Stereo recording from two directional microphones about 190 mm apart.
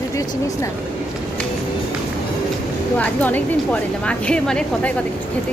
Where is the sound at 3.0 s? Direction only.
10° left (ahead or behind).